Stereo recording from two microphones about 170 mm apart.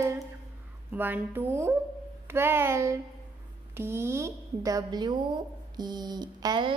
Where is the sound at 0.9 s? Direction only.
10° right (ahead or behind).